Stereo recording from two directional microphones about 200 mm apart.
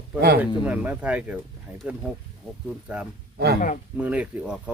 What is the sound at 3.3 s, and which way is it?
Speech, 55° right (ahead or behind).